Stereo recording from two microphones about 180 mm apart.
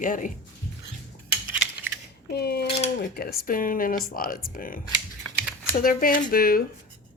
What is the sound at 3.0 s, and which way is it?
Speech, 60° left (ahead or behind).